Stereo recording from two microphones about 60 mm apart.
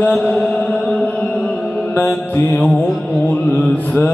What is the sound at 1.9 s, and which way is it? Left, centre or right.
Mantra, left.